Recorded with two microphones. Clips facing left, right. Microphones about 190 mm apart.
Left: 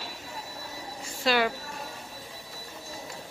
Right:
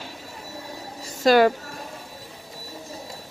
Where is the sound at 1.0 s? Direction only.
45° right (ahead or behind).